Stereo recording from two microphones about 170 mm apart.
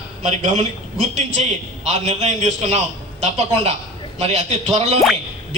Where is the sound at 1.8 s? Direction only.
40° right (ahead or behind).